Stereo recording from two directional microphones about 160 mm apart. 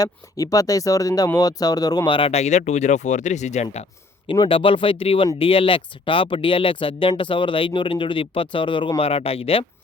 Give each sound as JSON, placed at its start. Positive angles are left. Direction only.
{"t": 0.0, "sound": "speech", "side_deg": 20}
{"t": 4.3, "sound": "speech", "side_deg": 35}